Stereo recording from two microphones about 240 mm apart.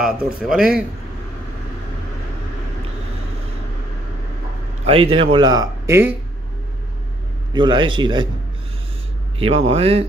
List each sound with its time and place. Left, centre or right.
0.4 s speech: centre
4.8 s speech: right
7.5 s speech: centre
9.4 s speech: right